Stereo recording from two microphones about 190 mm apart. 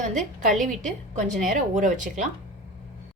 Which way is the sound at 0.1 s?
40° right (ahead or behind).